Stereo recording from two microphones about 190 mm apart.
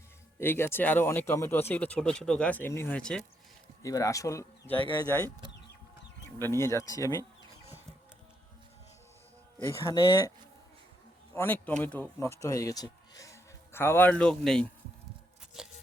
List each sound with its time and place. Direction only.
0.3 s speech: 10° left (ahead or behind)
3.8 s speech: 15° left (ahead or behind)
4.8 s speech: 25° left (ahead or behind)
5.0 s speech: 10° left (ahead or behind)
9.8 s speech: 20° left (ahead or behind)
11.3 s speech: 10° left (ahead or behind)
15.6 s a sound: 5° right (ahead or behind)